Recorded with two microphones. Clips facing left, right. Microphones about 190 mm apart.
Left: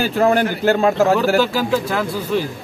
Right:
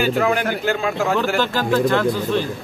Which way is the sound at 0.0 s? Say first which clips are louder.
Left 3 dB; 35° left (ahead or behind).